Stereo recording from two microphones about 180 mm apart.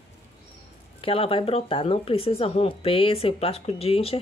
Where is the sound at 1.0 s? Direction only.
30° left (ahead or behind).